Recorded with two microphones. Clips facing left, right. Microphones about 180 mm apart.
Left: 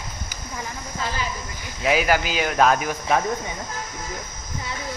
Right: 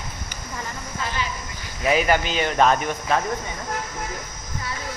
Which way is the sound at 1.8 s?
5° left (ahead or behind).